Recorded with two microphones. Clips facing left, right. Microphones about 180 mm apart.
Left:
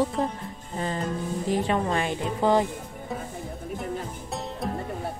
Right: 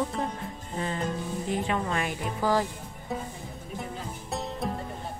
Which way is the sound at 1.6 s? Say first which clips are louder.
Left 4 dB; 30° left (ahead or behind).